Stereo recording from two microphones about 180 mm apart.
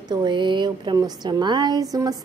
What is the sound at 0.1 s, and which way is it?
A woman's voice, 25° right (ahead or behind).